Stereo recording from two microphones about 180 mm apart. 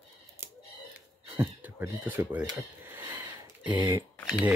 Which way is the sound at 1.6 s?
10° right (ahead or behind).